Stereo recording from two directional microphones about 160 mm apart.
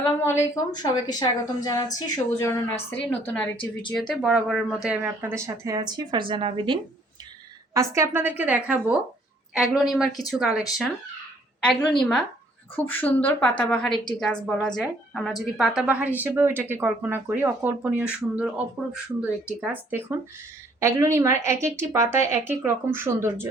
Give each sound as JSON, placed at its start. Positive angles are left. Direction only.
{"t": 0.2, "sound": "a woman's voice", "side_deg": 15}
{"t": 7.7, "sound": "a woman's voice", "side_deg": -20}
{"t": 11.6, "sound": "a woman's voice", "side_deg": 5}
{"t": 19.6, "sound": "a woman's voice", "side_deg": -10}